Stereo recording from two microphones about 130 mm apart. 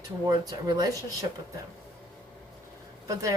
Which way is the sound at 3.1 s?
25° right (ahead or behind).